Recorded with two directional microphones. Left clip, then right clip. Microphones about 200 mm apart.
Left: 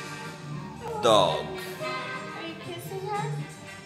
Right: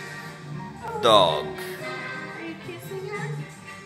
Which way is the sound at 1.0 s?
20° right (ahead or behind).